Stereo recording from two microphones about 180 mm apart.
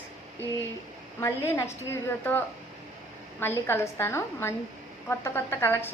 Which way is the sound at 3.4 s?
10° left (ahead or behind).